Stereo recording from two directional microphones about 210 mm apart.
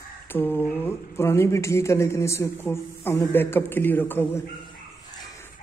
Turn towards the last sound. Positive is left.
turn(degrees=10)  # may be behind; listen again after turning